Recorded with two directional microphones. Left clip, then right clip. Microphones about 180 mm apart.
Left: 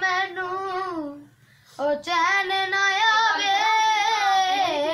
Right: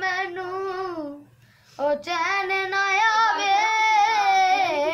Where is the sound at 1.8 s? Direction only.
15° right (ahead or behind).